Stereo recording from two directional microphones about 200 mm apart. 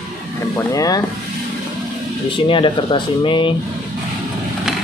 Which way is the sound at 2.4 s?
25° left (ahead or behind).